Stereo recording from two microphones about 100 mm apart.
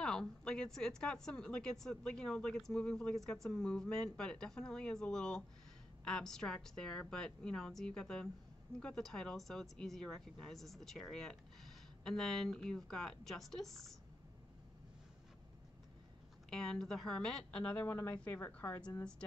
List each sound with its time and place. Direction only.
0.0 s a woman's voice: 5° left (ahead or behind)
16.4 s a woman's voice: 5° left (ahead or behind); by 18.8 s 20° left (ahead or behind)